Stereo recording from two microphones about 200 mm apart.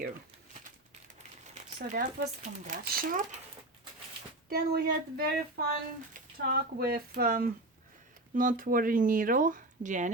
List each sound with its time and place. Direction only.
1.9 s speech: 35° right (ahead or behind)
4.4 s speech: 50° right (ahead or behind)